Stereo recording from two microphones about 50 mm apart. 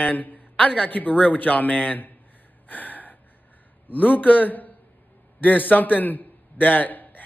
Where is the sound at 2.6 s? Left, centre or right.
Left.